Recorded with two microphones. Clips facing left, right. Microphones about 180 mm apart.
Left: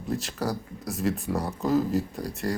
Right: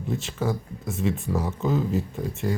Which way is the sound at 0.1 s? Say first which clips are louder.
Right 1 dB; centre (ahead or behind).